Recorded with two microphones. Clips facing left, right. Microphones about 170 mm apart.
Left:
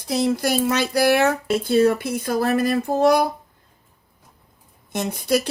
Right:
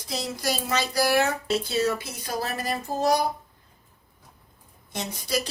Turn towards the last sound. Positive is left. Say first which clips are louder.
# left 9 dB
turn(degrees=55)  # may be behind; listen again after turning